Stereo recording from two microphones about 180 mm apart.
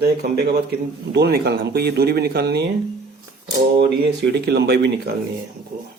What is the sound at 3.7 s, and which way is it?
Speech, 65° right (ahead or behind).